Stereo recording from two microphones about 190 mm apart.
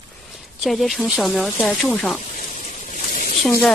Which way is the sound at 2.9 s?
50° left (ahead or behind).